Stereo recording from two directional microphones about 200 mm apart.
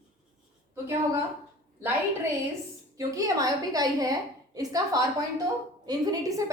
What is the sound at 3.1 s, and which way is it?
A woman's voice, 15° right (ahead or behind).